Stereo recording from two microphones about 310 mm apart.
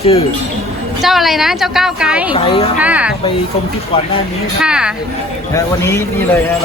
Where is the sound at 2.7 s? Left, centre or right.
Centre.